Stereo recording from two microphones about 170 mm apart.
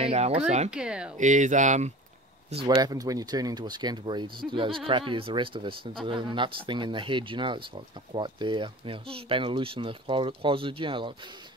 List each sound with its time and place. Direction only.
0.0 s speech: 35° right (ahead or behind)
0.7 s speech: 5° right (ahead or behind)
1.1 s speech: 45° right (ahead or behind)
2.5 s speech: 25° right (ahead or behind)